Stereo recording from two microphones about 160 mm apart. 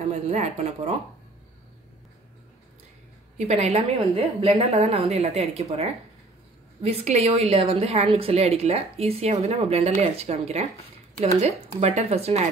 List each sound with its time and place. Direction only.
0.1 s speech: 45° right (ahead or behind)
3.3 s a woman's voice: 45° right (ahead or behind)